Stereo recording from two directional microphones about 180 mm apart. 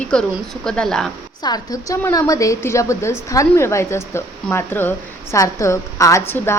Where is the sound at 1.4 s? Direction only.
20° left (ahead or behind).